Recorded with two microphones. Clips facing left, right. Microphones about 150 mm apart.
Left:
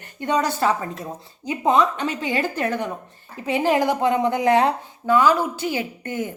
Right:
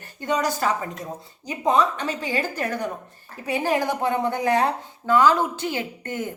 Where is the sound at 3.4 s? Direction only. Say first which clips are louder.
Left 3 dB; 15° left (ahead or behind).